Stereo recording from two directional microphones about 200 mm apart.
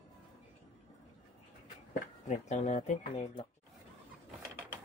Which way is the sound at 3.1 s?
25° left (ahead or behind).